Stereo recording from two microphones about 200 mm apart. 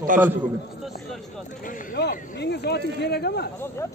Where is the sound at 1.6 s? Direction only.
45° left (ahead or behind).